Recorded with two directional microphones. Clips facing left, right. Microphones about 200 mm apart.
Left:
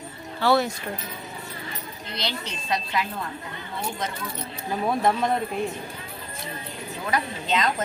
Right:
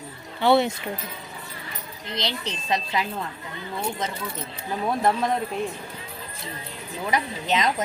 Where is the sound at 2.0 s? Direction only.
20° right (ahead or behind).